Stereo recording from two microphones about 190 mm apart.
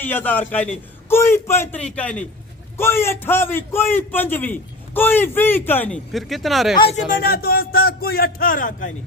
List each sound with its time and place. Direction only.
0.0 s a man's voice: 10° left (ahead or behind)
6.8 s a man's voice: 50° left (ahead or behind)